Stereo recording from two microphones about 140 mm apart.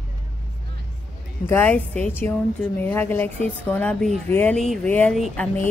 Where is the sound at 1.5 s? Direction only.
15° left (ahead or behind).